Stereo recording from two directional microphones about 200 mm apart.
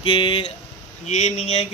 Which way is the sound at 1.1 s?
35° left (ahead or behind).